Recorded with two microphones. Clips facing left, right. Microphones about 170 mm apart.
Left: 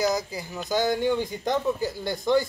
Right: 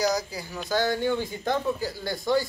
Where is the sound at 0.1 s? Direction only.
20° left (ahead or behind).